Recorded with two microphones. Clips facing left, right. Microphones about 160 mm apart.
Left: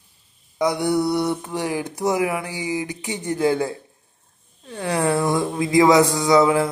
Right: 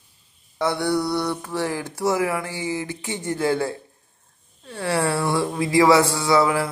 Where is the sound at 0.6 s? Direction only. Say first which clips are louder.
Left 2 dB; 20° left (ahead or behind).